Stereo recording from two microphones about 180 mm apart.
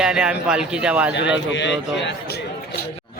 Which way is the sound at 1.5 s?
80° left.